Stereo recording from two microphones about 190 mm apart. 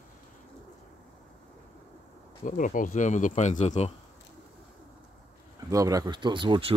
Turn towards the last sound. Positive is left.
turn(degrees=-25)  # may be behind; listen again after turning